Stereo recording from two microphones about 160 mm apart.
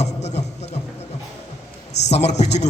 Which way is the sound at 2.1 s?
45° left (ahead or behind).